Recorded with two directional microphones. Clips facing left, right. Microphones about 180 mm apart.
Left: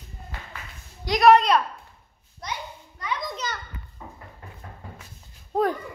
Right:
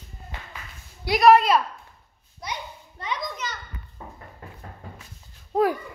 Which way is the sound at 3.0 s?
30° right (ahead or behind).